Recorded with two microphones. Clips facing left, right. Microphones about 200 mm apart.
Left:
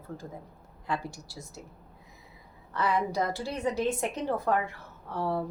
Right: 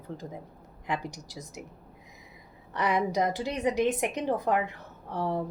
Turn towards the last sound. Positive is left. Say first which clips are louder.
# even
turn(degrees=-15)  # may be behind; listen again after turning